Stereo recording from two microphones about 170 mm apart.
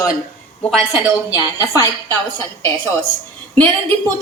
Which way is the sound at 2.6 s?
10° left (ahead or behind).